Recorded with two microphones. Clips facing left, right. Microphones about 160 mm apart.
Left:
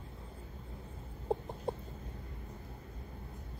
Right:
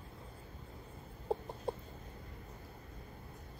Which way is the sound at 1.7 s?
20° left (ahead or behind).